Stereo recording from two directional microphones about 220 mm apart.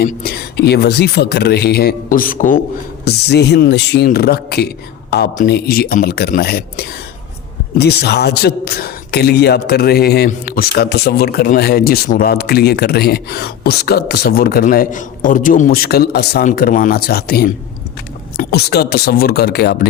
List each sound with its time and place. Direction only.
0.0 s a man's voice: 45° left (ahead or behind)
3.0 s a man's voice: 50° left (ahead or behind)